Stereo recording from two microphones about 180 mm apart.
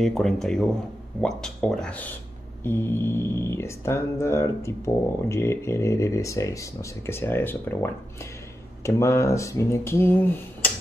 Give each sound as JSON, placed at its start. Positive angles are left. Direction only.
{"t": 0.0, "sound": "speech", "side_deg": 0}